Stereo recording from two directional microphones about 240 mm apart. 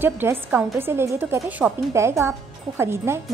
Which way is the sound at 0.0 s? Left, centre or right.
Centre.